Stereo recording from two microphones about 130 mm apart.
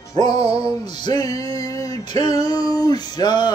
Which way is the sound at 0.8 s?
35° left (ahead or behind).